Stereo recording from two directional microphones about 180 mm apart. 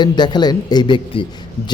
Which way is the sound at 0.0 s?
25° left (ahead or behind).